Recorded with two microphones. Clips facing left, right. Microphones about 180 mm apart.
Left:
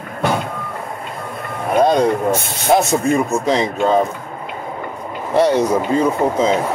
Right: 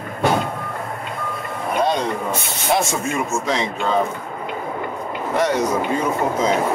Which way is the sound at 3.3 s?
35° left (ahead or behind).